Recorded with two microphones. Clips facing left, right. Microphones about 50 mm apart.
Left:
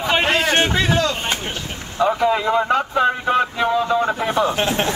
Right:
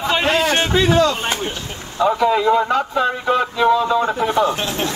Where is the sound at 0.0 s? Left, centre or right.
Left.